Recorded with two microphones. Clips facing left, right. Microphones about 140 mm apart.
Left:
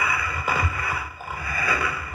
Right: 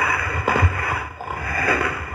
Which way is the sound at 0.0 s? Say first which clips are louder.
Right 4 dB; 55° right (ahead or behind).